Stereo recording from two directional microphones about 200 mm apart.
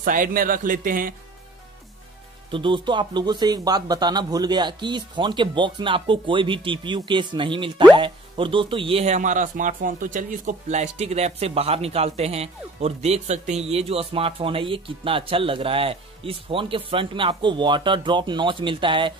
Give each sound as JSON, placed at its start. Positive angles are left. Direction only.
{"t": 0.0, "sound": "a man's voice", "side_deg": -45}
{"t": 2.5, "sound": "speech", "side_deg": -25}